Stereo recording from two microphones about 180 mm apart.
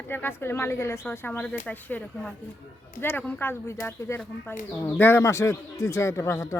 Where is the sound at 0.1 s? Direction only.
10° left (ahead or behind).